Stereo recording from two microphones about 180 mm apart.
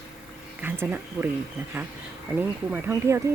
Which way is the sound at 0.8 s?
10° right (ahead or behind).